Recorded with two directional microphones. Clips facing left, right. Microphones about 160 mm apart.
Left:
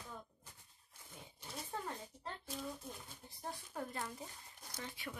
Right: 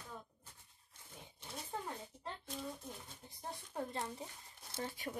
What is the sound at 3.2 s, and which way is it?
Speech, 25° right (ahead or behind).